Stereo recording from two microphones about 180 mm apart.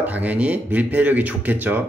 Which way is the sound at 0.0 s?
10° right (ahead or behind).